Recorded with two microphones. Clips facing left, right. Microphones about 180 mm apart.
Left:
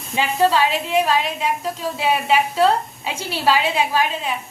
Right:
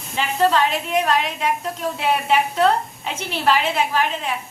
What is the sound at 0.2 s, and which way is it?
A woman's voice, 10° left (ahead or behind).